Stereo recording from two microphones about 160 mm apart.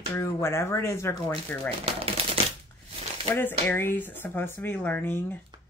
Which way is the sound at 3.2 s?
10° left (ahead or behind).